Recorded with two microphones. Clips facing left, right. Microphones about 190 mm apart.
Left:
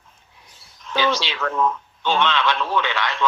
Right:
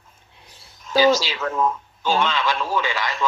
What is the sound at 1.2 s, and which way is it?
Speech, 5° right (ahead or behind).